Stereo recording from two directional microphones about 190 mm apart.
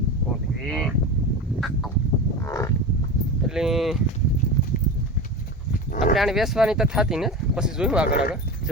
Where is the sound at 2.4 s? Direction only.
15° left (ahead or behind).